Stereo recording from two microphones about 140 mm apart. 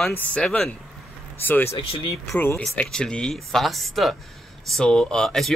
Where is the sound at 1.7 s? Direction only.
40° left (ahead or behind).